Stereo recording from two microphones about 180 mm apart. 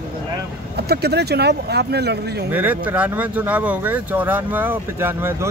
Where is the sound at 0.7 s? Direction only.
65° right (ahead or behind).